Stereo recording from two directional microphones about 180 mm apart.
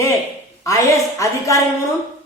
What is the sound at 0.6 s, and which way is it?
Speech, 15° left (ahead or behind).